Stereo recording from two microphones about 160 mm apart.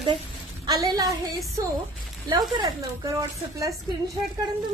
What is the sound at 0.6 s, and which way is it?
A woman's voice, 25° right (ahead or behind).